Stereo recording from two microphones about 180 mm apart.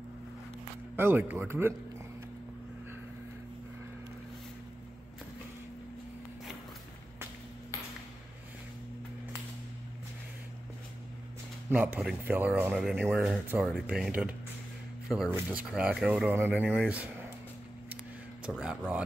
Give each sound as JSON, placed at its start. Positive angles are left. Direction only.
{"t": 0.9, "sound": "speech", "side_deg": -10}
{"t": 11.7, "sound": "speech", "side_deg": -10}
{"t": 18.4, "sound": "speech", "side_deg": -5}